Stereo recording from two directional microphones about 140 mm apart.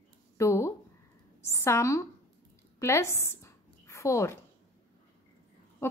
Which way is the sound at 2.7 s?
20° left (ahead or behind).